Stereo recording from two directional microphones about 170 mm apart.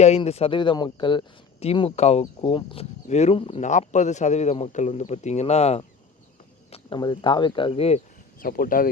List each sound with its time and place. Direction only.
0.2 s a man's voice: 35° left (ahead or behind)
6.7 s a sound: 35° left (ahead or behind)
7.0 s speech: 25° left (ahead or behind)
8.4 s speech: 55° left (ahead or behind)